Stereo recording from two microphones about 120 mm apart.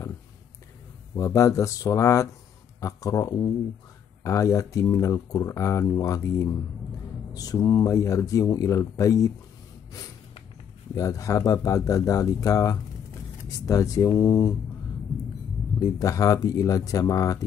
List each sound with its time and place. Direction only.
1.1 s speech: 25° left (ahead or behind)
11.0 s speech: 25° left (ahead or behind)
15.8 s speech: 25° left (ahead or behind)